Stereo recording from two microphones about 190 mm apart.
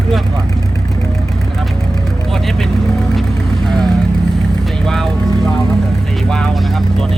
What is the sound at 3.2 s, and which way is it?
Vehicle, centre (ahead or behind).